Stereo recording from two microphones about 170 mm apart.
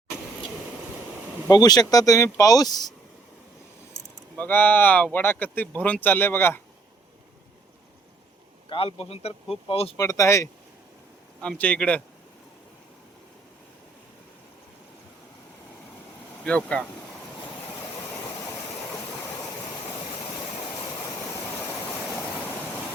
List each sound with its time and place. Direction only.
1.5 s speech: 25° left (ahead or behind)
4.4 s speech: 10° left (ahead or behind)
8.7 s a man's voice: 35° left (ahead or behind)
10.0 s speech: 20° left (ahead or behind)
16.4 s speech: 5° left (ahead or behind)